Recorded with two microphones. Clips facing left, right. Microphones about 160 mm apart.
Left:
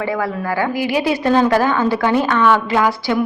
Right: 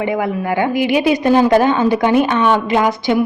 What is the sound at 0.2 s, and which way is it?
A woman's voice, 20° right (ahead or behind).